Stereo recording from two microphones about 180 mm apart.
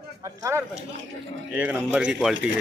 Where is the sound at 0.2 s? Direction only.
15° right (ahead or behind).